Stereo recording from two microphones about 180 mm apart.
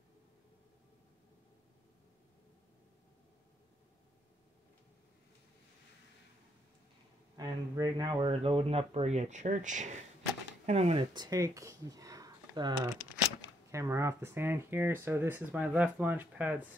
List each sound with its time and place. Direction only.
7.3 s speech: 20° right (ahead or behind)
11.1 s speech: 20° right (ahead or behind)